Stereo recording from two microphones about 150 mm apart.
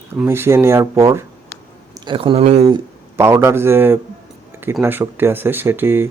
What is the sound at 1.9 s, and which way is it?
Speech, 30° right (ahead or behind).